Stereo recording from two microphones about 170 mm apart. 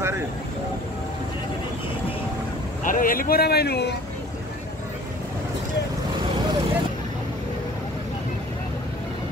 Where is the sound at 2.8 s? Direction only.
55° left (ahead or behind); by 4.0 s 75° left (ahead or behind).